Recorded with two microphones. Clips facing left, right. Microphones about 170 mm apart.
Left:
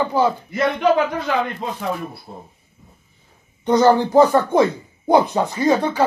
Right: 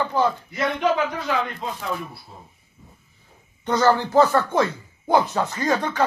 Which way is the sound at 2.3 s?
55° left (ahead or behind).